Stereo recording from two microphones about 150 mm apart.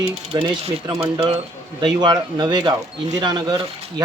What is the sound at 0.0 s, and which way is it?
Speech, 25° right (ahead or behind).